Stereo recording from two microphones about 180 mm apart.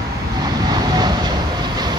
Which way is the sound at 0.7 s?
25° right (ahead or behind).